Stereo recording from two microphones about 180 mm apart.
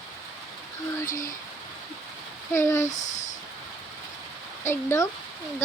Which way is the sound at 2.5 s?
15° left (ahead or behind).